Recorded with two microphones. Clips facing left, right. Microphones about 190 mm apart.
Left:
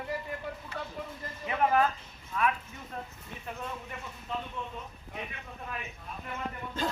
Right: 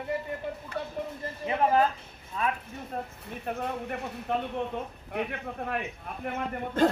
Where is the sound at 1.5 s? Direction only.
30° right (ahead or behind).